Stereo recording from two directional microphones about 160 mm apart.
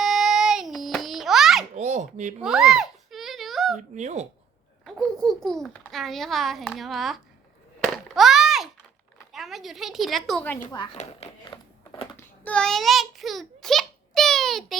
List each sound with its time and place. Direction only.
0.0 s child singing: centre (ahead or behind)
1.7 s babbling: 45° right (ahead or behind)
2.4 s a sound: 5° right (ahead or behind)
3.8 s speech: 50° right (ahead or behind)
4.9 s a child's voice: 5° left (ahead or behind)
8.1 s a sound: centre (ahead or behind)
9.3 s a woman's voice: centre (ahead or behind)
10.9 s speech: 45° left (ahead or behind)
11.4 s crumpling: 25° left (ahead or behind)
12.1 s a sound: 5° left (ahead or behind)